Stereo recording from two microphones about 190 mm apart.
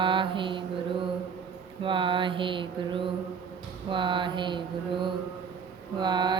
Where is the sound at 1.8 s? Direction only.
25° right (ahead or behind).